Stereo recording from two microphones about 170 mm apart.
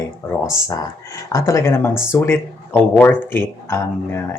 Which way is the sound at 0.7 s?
20° left (ahead or behind).